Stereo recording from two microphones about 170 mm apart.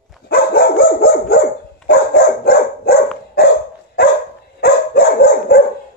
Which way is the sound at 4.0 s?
70° left (ahead or behind).